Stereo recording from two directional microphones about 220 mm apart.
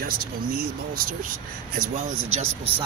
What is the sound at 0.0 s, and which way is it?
Speech, 40° right (ahead or behind).